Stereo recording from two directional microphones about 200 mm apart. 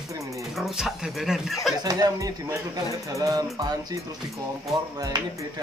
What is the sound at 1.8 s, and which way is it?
Speech, 20° right (ahead or behind).